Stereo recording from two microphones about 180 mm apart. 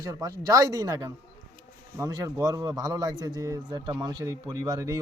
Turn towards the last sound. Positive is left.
turn(degrees=-20)  # may be behind; listen again after turning